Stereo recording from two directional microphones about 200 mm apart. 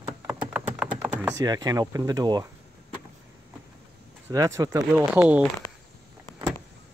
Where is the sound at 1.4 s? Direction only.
20° right (ahead or behind).